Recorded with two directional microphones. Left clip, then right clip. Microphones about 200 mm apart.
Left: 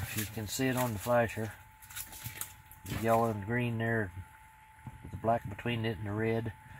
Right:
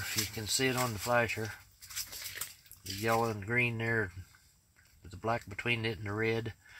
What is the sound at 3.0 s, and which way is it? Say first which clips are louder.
Speech: left 2 dB; 10° right (ahead or behind).